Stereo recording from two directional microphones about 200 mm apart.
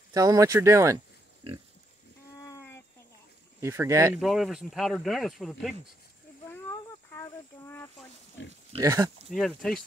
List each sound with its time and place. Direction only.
0.1 s speech: 15° right (ahead or behind)
2.4 s a sound: 15° left (ahead or behind)
3.6 s speech: 15° right (ahead or behind)
4.2 s speech: centre (ahead or behind)
6.5 s a sound: 10° left (ahead or behind)
8.4 s speech: 65° left (ahead or behind)
8.8 s speech: 15° right (ahead or behind)
9.3 s speech: centre (ahead or behind)